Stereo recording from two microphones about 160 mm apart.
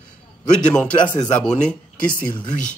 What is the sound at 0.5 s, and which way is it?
Speech, 5° left (ahead or behind).